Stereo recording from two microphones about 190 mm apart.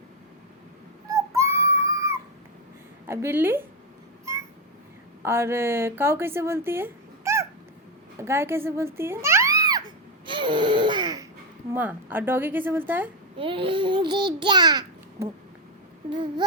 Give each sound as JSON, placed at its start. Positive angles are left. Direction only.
{"t": 1.1, "sound": "music", "side_deg": -15}
{"t": 3.1, "sound": "a woman's voice", "side_deg": -15}
{"t": 5.2, "sound": "a woman's voice", "side_deg": -15}
{"t": 10.2, "sound": "a sound", "side_deg": -25}
{"t": 11.7, "sound": "a woman's voice", "side_deg": -10}
{"t": 13.3, "sound": "babbling", "side_deg": -25}